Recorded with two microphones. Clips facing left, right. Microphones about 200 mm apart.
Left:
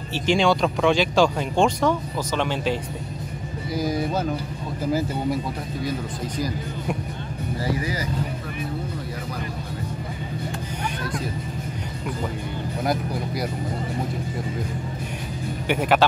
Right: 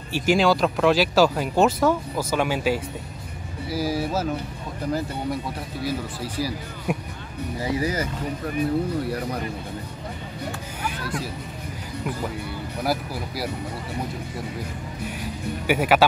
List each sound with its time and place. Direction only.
0.1 s speech: 5° right (ahead or behind)
5.9 s speech: 5° right (ahead or behind)
7.8 s speech: 45° right (ahead or behind)
12.8 s speech: 5° right (ahead or behind)
15.6 s speech: 5° right (ahead or behind)